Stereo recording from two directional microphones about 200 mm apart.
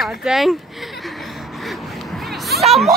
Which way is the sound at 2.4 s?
Centre (ahead or behind).